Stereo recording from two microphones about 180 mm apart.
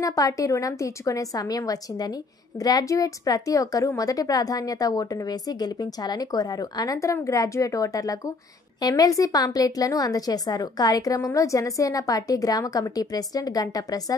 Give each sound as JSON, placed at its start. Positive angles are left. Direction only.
{"t": 0.0, "sound": "a woman's voice", "side_deg": 20}